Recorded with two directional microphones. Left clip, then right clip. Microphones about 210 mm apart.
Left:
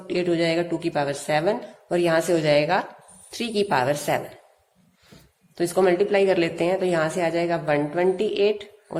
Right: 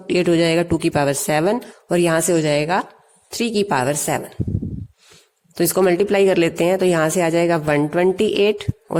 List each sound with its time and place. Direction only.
0.1 s a woman's voice: 45° right (ahead or behind)
5.5 s a woman's voice: 45° right (ahead or behind)